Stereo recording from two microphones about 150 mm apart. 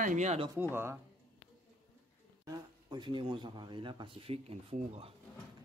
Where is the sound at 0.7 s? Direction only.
15° right (ahead or behind).